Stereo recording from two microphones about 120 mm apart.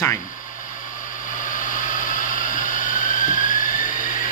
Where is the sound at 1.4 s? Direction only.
90° left.